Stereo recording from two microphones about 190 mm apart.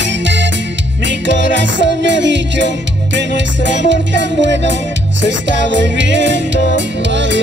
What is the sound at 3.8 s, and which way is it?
Music, 70° right (ahead or behind).